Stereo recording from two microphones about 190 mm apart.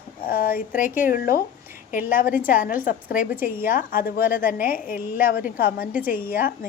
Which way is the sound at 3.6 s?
50° left (ahead or behind).